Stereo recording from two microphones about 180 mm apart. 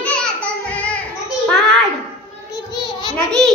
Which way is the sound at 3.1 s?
5° left (ahead or behind).